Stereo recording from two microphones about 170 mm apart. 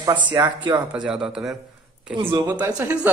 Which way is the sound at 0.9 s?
5° right (ahead or behind).